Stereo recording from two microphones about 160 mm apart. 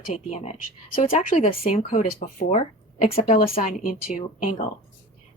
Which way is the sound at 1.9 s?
55° left (ahead or behind).